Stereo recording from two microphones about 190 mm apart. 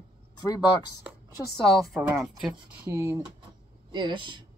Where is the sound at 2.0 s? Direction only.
5° right (ahead or behind).